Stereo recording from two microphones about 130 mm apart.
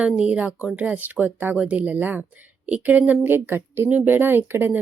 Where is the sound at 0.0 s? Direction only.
10° right (ahead or behind).